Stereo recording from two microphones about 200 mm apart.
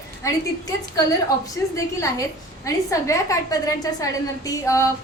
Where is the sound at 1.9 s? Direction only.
15° left (ahead or behind).